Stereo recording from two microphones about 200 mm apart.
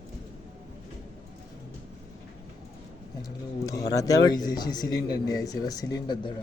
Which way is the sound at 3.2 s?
15° left (ahead or behind).